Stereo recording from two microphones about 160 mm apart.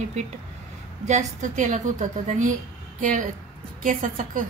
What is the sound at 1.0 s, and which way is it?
A woman's voice, 50° right (ahead or behind).